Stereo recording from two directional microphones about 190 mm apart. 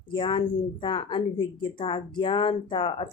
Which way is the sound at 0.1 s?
25° left (ahead or behind).